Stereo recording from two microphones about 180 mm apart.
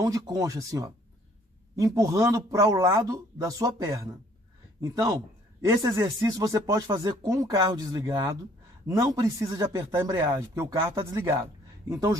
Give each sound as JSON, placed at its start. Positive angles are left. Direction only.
{"t": 0.0, "sound": "speech", "side_deg": -20}
{"t": 2.0, "sound": "speech", "side_deg": -20}